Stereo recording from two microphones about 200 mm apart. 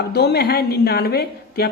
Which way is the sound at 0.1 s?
55° left (ahead or behind).